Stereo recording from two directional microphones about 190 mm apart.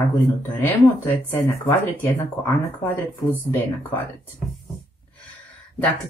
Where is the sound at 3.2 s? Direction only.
10° left (ahead or behind).